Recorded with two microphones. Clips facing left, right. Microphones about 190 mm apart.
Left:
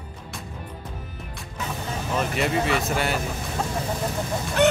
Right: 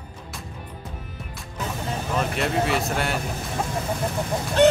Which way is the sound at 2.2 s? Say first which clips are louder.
Even; centre (ahead or behind).